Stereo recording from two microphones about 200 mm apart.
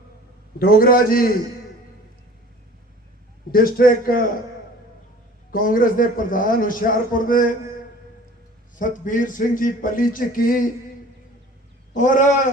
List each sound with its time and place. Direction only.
0.6 s speech: 45° left (ahead or behind)
3.5 s speech: 45° left (ahead or behind)
5.5 s speech: 45° left (ahead or behind)
8.7 s speech: 40° left (ahead or behind)
11.9 s cat: 40° left (ahead or behind)